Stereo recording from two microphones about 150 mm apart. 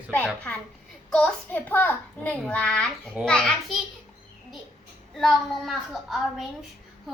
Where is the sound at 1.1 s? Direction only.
10° left (ahead or behind).